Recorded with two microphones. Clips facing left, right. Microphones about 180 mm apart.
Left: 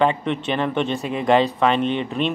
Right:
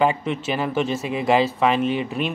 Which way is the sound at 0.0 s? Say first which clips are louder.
Left 1 dB; 5° right (ahead or behind).